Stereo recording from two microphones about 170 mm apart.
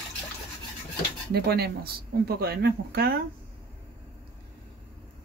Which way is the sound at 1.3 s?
70° right (ahead or behind).